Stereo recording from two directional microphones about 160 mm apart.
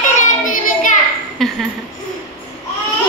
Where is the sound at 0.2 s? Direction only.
55° left (ahead or behind).